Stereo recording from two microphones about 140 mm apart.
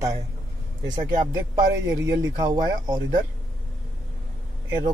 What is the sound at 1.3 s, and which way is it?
Speech, 25° right (ahead or behind).